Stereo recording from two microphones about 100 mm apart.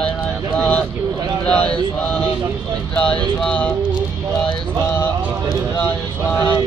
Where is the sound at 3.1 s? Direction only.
10° left (ahead or behind).